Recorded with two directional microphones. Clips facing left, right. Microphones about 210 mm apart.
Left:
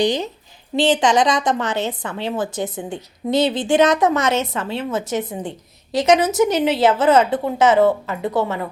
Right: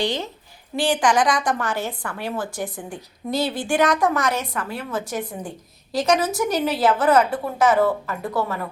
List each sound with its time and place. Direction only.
0.0 s a woman's voice: 15° left (ahead or behind)